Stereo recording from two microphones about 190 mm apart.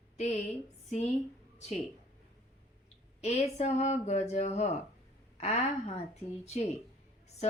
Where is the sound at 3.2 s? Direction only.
35° left (ahead or behind).